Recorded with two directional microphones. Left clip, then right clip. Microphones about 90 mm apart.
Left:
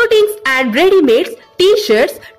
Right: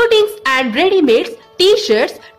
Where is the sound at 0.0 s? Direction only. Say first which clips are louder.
Left 1 dB; 40° left (ahead or behind).